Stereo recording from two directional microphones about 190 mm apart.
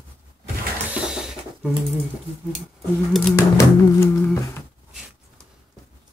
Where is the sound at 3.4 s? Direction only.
15° left (ahead or behind).